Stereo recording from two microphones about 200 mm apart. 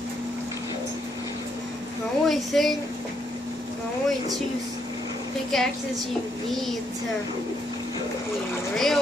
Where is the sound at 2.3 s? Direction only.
Centre (ahead or behind).